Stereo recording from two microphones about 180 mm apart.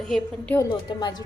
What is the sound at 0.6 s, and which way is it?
Speech, 25° left (ahead or behind).